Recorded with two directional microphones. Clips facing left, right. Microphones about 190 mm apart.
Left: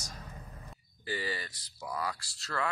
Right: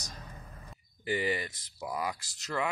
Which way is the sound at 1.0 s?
20° right (ahead or behind).